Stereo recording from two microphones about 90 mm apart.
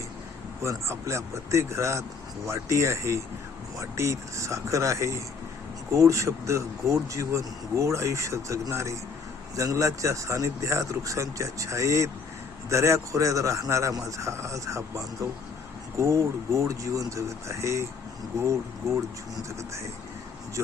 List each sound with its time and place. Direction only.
0.6 s speech: 30° right (ahead or behind)